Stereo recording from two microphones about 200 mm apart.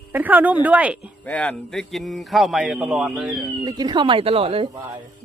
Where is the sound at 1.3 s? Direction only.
5° left (ahead or behind).